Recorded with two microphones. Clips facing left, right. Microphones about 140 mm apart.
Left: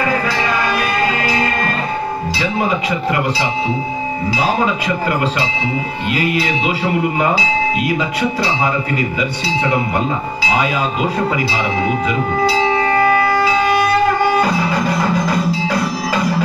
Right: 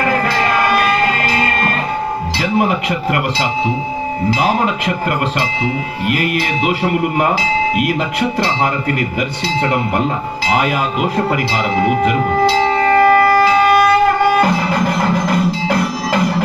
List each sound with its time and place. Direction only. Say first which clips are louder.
0.0 s music: right 2 dB; 55° right (ahead or behind)
2.4 s speech: right 3 dB; 60° right (ahead or behind)
4.4 s speech: left 1 dB; 60° right (ahead or behind)
6.1 s speech: left 2 dB; 55° right (ahead or behind)
9.6 s speech: right 1 dB; 60° right (ahead or behind)
12.8 s music: right 4 dB; 50° right (ahead or behind)